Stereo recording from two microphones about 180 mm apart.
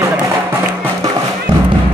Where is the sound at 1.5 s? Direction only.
30° right (ahead or behind).